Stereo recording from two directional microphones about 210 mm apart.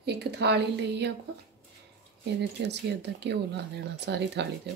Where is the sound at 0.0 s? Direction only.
50° right (ahead or behind).